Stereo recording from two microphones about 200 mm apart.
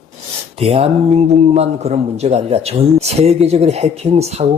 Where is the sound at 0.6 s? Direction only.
30° right (ahead or behind).